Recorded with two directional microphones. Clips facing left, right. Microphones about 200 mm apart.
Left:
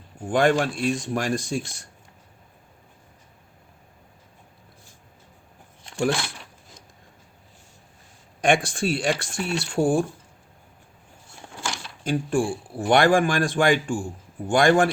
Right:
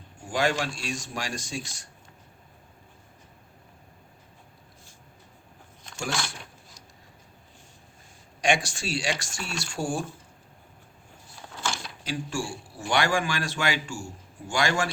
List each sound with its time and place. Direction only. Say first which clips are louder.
0.3 s speech: left 7 dB; 55° left (ahead or behind)
8.4 s speech: left 5 dB; 55° left (ahead or behind)
12.0 s a man's voice: left 9 dB; 55° left (ahead or behind)